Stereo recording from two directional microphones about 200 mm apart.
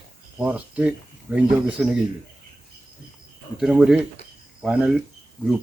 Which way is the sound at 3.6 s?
5° right (ahead or behind).